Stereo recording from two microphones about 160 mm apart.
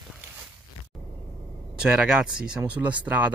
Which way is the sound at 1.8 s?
5° right (ahead or behind).